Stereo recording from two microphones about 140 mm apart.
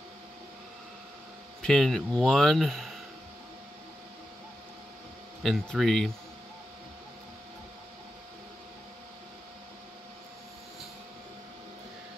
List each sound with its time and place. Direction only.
1.6 s speech: 5° left (ahead or behind)
5.4 s speech: centre (ahead or behind)